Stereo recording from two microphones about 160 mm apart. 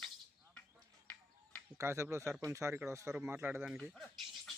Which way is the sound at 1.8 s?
15° right (ahead or behind).